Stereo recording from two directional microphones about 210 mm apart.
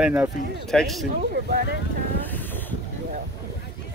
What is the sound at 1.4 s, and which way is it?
Speech, 45° right (ahead or behind).